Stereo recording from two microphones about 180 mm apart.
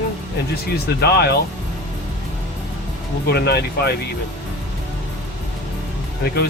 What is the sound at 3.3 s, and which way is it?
Speech, 65° left (ahead or behind).